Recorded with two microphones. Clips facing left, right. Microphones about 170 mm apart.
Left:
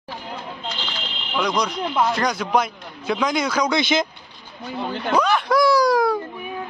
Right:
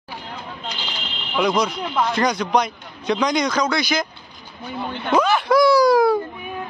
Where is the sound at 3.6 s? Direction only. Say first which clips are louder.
Left 2 dB; 20° left (ahead or behind).